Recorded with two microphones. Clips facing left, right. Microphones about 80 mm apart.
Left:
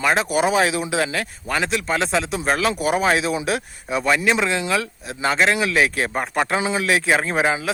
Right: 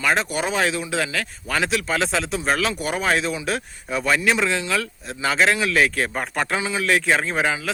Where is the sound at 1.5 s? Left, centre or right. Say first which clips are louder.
Left 1 dB; centre.